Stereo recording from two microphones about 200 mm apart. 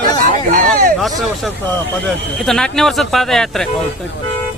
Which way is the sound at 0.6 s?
Centre (ahead or behind).